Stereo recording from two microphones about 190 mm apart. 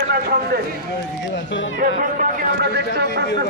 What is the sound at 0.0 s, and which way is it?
Speech, 55° right (ahead or behind).